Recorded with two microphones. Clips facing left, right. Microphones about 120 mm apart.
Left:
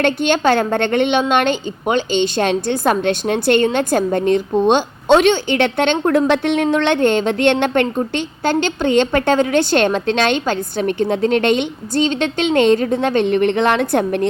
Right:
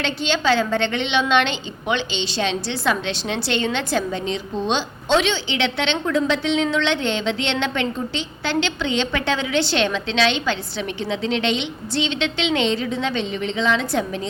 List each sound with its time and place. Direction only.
0.0 s a woman's voice: 50° left (ahead or behind)